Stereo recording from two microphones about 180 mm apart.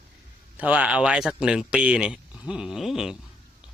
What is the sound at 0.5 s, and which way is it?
Speech, 10° right (ahead or behind).